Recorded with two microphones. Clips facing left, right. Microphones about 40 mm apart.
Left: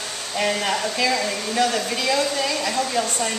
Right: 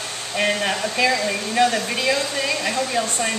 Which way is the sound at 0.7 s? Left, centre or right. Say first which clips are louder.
Right 1 dB; right.